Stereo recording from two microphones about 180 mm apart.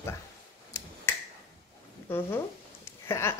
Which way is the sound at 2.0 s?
10° left (ahead or behind).